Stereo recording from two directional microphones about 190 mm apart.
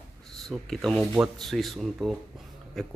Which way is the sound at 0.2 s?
Centre (ahead or behind).